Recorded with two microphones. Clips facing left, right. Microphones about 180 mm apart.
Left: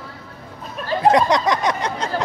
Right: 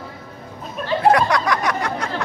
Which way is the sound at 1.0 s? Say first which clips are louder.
Left 1 dB; 20° left (ahead or behind).